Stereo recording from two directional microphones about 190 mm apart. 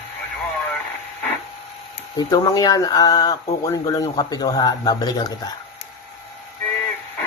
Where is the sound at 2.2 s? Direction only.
20° left (ahead or behind).